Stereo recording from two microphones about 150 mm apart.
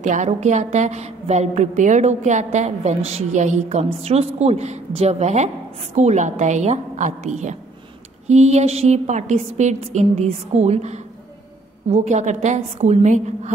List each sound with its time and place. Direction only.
0.0 s a woman's voice: 55° right (ahead or behind)